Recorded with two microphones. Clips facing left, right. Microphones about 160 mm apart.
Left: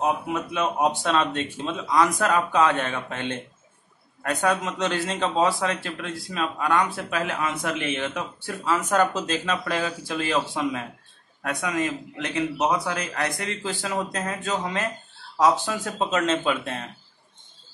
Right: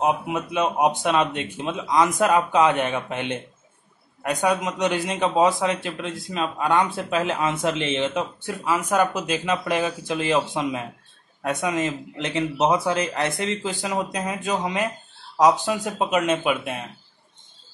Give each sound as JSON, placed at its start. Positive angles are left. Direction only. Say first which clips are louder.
{"t": 0.0, "sound": "a man's voice", "louder": "right 2 dB", "side_deg": -20}